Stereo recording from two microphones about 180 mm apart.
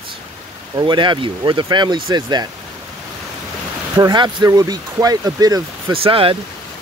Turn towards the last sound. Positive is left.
turn(degrees=-30)  # may be behind; listen again after turning